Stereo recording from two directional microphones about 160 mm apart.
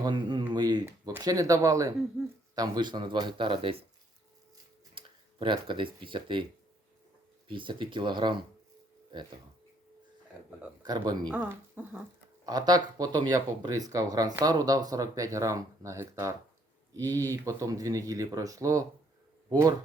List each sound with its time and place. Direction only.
0.0 s speech: 25° right (ahead or behind)
4.9 s speech: 30° right (ahead or behind)
7.4 s speech: 30° right (ahead or behind)
10.8 s speech: 25° right (ahead or behind)
11.3 s speech: 10° right (ahead or behind)
12.5 s speech: 25° right (ahead or behind)